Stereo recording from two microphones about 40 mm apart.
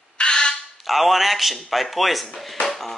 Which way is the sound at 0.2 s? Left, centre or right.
Left.